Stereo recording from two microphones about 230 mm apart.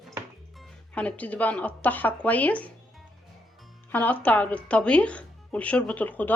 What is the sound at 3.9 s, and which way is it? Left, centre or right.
Speech, centre.